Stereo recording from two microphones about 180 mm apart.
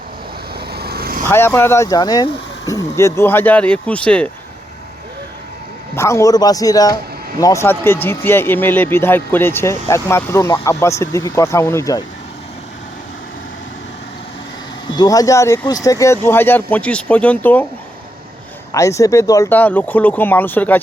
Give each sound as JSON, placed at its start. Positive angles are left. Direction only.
{"t": 0.7, "sound": "vehicle", "side_deg": -60}
{"t": 1.3, "sound": "a man's voice", "side_deg": 15}
{"t": 6.0, "sound": "a man's voice", "side_deg": 15}
{"t": 14.9, "sound": "a man's voice", "side_deg": 20}
{"t": 18.7, "sound": "a man's voice", "side_deg": 15}